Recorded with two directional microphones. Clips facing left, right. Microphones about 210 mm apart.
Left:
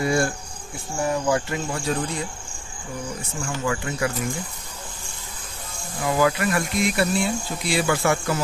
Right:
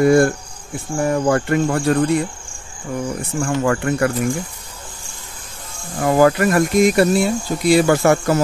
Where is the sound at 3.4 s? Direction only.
60° right (ahead or behind).